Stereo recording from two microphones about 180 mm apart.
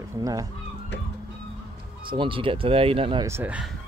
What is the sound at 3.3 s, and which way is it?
Speech, 10° right (ahead or behind).